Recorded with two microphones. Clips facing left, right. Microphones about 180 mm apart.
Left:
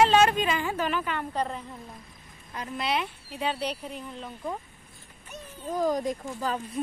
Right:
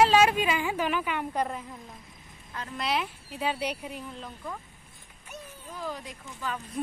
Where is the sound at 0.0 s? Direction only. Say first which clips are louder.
Left 1 dB; 5° right (ahead or behind).